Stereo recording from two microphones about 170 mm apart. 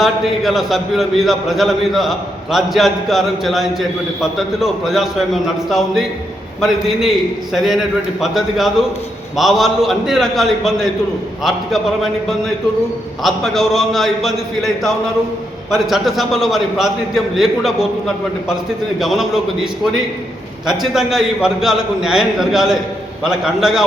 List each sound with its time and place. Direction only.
0.0 s a man's voice: centre (ahead or behind)
13.2 s a man's voice: centre (ahead or behind)